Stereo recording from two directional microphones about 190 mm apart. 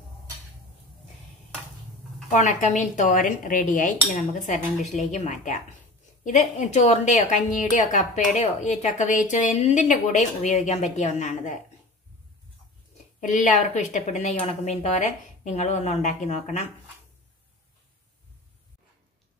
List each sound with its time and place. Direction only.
2.3 s a woman's voice: 40° left (ahead or behind)
13.2 s a woman's voice: 40° left (ahead or behind)